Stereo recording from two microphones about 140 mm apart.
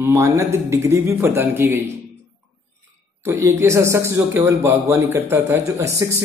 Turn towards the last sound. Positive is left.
turn(degrees=-20)  # may be behind; listen again after turning